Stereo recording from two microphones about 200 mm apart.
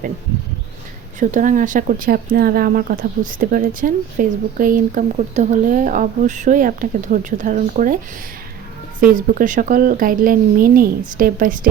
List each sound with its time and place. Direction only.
1.2 s speech: 40° right (ahead or behind)
9.0 s a woman's voice: 45° right (ahead or behind)